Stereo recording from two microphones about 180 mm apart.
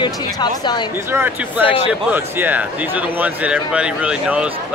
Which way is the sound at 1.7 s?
10° right (ahead or behind).